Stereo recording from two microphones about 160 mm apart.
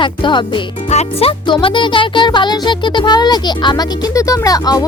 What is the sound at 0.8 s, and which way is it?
Speech, 40° left (ahead or behind).